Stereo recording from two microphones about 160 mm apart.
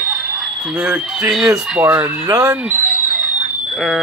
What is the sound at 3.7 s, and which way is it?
Speech, centre (ahead or behind).